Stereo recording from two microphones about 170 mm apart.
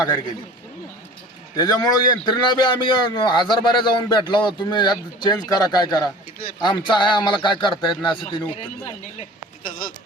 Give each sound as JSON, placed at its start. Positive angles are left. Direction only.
{"t": 0.0, "sound": "a man's voice", "side_deg": 25}
{"t": 1.5, "sound": "a man's voice", "side_deg": 25}